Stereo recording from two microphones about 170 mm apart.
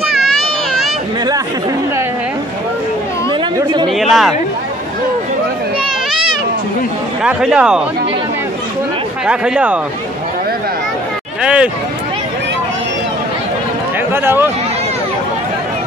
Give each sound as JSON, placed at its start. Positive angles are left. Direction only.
{"t": 3.3, "sound": "chatter", "side_deg": -25}
{"t": 3.9, "sound": "a sound", "side_deg": 0}
{"t": 7.2, "sound": "speech", "side_deg": -5}
{"t": 9.2, "sound": "speech", "side_deg": -5}
{"t": 11.4, "sound": "speech", "side_deg": -5}
{"t": 14.1, "sound": "speech", "side_deg": -15}